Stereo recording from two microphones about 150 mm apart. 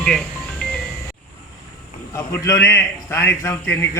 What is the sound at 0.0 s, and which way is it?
Music, 5° left (ahead or behind).